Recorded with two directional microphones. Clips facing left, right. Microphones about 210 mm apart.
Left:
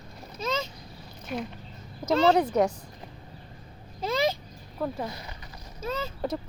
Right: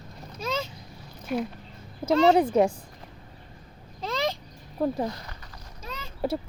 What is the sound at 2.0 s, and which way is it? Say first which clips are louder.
Speech: right 2 dB; 30° right (ahead or behind).